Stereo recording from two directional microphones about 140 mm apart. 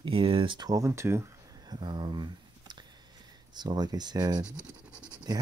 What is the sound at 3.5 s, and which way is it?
Speech, 30° right (ahead or behind).